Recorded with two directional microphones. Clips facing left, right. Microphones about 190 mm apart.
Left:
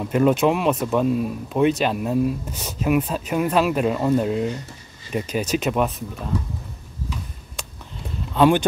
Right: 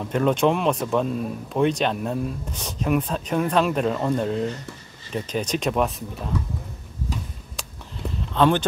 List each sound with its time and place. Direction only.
0.0 s speech: 5° left (ahead or behind)
7.6 s a sound: centre (ahead or behind)
8.3 s speech: 10° left (ahead or behind)